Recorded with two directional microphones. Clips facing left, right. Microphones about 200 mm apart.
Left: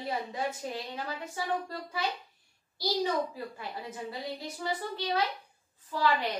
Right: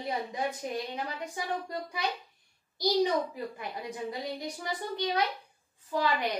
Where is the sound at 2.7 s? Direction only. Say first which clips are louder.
Right 3 dB; 15° right (ahead or behind).